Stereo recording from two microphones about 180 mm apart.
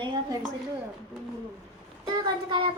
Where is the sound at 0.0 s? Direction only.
25° right (ahead or behind).